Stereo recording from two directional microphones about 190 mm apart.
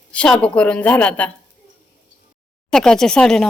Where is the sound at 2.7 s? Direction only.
Centre (ahead or behind).